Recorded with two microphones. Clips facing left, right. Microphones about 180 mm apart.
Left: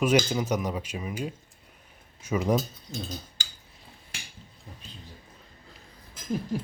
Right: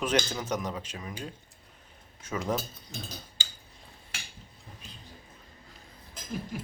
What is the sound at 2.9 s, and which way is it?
Speech, 25° left (ahead or behind).